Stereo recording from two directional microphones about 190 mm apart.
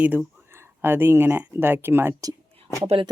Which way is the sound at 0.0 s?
10° right (ahead or behind).